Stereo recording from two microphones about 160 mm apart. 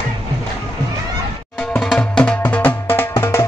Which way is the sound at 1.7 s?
5° left (ahead or behind).